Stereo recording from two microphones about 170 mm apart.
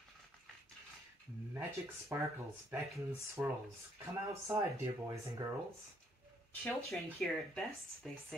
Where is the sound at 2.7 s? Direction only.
15° right (ahead or behind).